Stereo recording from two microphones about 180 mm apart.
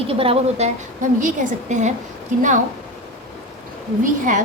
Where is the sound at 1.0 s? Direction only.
45° right (ahead or behind).